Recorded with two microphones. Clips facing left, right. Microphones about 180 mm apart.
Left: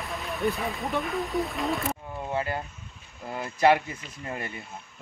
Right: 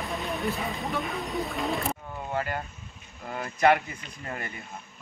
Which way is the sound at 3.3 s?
30° left (ahead or behind).